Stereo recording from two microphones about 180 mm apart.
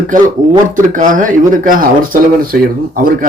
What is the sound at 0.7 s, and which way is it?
Speech, 45° right (ahead or behind).